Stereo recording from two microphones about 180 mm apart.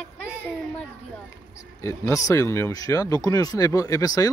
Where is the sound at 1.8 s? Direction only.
15° left (ahead or behind).